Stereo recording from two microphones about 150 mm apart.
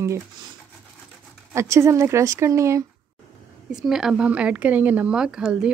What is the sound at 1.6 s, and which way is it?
Speech, 20° right (ahead or behind).